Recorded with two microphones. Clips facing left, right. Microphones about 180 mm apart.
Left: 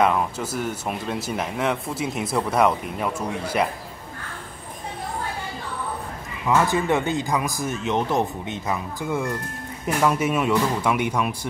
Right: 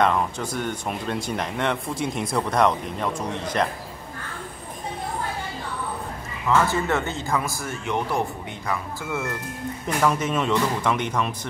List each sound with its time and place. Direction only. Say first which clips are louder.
0.0 s speech: left 1 dB; 5° left (ahead or behind)
6.4 s speech: left 1 dB; 15° left (ahead or behind)